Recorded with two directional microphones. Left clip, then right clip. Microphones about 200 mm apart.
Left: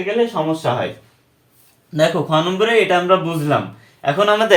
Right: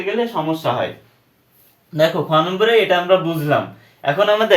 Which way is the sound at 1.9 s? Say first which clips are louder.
Right 1 dB; 25° left (ahead or behind).